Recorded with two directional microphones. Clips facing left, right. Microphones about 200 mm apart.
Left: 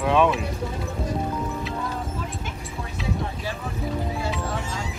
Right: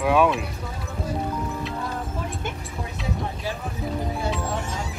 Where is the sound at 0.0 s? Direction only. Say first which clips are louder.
Even; 5° right (ahead or behind).